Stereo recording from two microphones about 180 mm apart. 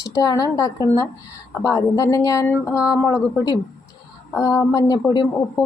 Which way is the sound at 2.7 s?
5° right (ahead or behind).